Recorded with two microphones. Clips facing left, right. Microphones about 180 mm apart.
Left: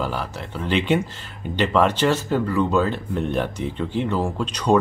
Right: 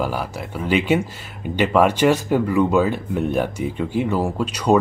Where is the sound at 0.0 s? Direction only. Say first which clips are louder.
Right 3 dB; 10° right (ahead or behind).